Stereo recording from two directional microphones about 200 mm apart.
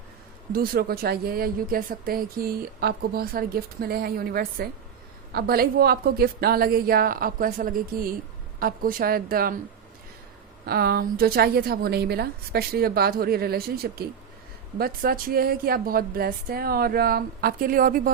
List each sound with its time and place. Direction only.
0.5 s speech: 45° right (ahead or behind)
10.7 s speech: 50° right (ahead or behind)